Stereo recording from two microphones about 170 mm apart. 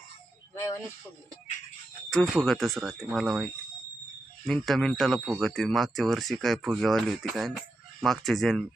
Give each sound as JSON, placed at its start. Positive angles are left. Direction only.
{"t": 0.5, "sound": "speech", "side_deg": 15}
{"t": 2.0, "sound": "speech", "side_deg": 0}